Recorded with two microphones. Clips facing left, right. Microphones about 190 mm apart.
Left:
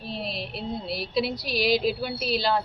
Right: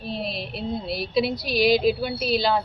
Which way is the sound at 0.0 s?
45° right (ahead or behind).